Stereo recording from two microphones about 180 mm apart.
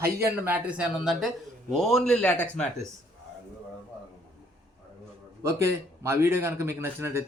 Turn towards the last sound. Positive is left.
turn(degrees=-15)  # may be behind; listen again after turning